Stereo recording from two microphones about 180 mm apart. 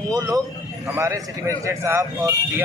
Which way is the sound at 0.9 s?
15° right (ahead or behind).